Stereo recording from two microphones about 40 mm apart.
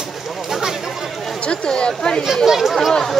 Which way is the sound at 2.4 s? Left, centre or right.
Centre.